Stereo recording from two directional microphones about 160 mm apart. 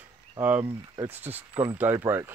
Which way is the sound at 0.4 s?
10° right (ahead or behind).